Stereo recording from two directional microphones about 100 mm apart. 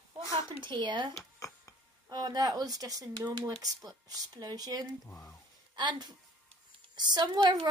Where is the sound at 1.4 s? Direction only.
35° left (ahead or behind).